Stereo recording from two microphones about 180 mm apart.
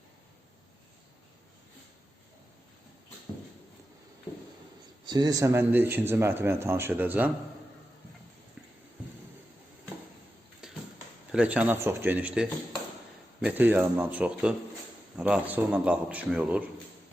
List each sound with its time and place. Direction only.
5.0 s speech: 20° right (ahead or behind)
10.6 s a sound: 5° right (ahead or behind)
11.3 s speech: 5° right (ahead or behind)